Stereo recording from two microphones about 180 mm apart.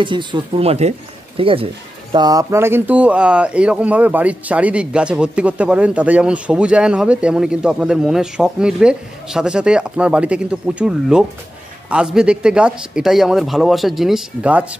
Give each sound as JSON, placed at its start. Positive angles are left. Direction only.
{"t": 0.0, "sound": "speech", "side_deg": -25}
{"t": 2.1, "sound": "speech", "side_deg": -20}